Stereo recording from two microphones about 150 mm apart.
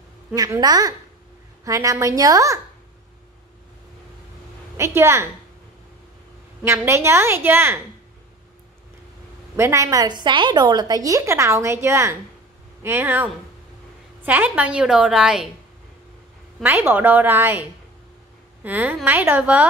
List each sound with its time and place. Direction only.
0.3 s a woman's voice: 20° right (ahead or behind)
4.7 s a woman's voice: 15° right (ahead or behind)
6.6 s a woman's voice: 15° right (ahead or behind)
9.6 s a woman's voice: 20° right (ahead or behind); by 15.5 s 5° right (ahead or behind)
16.6 s a woman's voice: 10° right (ahead or behind)